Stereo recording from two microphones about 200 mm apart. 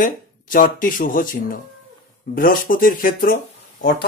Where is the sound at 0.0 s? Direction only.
45° left (ahead or behind).